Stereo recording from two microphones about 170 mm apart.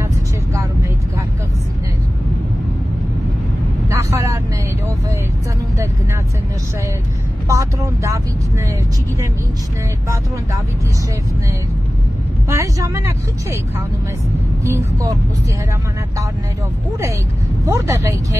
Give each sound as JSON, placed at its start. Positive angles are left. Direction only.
{"t": 3.9, "sound": "vehicle", "side_deg": -20}
{"t": 7.4, "sound": "speech", "side_deg": -15}
{"t": 12.4, "sound": "speech", "side_deg": -15}
{"t": 17.6, "sound": "speech", "side_deg": -15}